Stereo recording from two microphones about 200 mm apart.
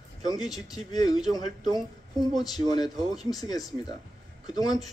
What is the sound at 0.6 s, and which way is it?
Speech, 20° left (ahead or behind).